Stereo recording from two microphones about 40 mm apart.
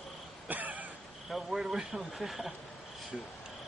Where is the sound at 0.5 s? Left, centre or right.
Right.